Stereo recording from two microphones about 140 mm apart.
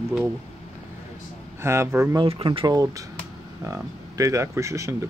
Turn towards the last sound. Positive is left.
turn(degrees=-20)  # may be behind; listen again after turning